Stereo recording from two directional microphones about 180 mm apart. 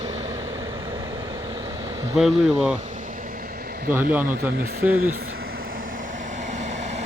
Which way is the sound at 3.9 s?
10° right (ahead or behind).